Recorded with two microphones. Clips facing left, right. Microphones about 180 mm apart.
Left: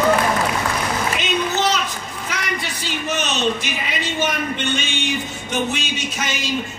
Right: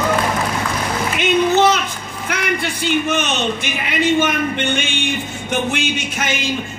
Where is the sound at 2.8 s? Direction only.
55° right (ahead or behind).